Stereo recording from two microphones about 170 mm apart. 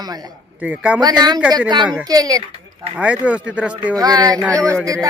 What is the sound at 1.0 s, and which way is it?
A woman's voice, 25° right (ahead or behind).